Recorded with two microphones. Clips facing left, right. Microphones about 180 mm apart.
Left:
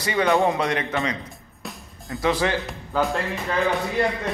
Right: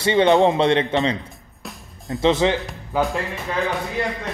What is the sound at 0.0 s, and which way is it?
Speech, 25° right (ahead or behind).